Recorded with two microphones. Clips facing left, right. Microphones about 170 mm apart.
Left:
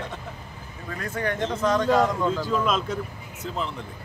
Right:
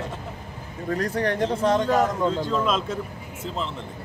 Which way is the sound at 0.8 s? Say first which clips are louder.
Right 5 dB; 35° right (ahead or behind).